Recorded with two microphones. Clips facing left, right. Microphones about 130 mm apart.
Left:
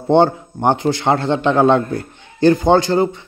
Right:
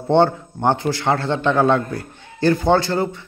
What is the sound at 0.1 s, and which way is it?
A man's voice, 15° left (ahead or behind).